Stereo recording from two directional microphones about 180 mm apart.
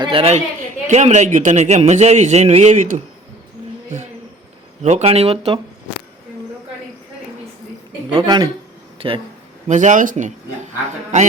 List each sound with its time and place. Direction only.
0.0 s a man's voice: 30° right (ahead or behind)
4.8 s a man's voice: 40° right (ahead or behind)
8.1 s speech: 25° right (ahead or behind)
9.6 s speech: 45° right (ahead or behind)